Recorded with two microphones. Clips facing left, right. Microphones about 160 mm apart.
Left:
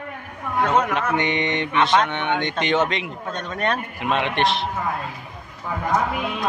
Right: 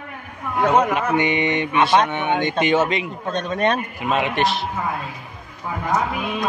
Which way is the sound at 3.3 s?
20° right (ahead or behind).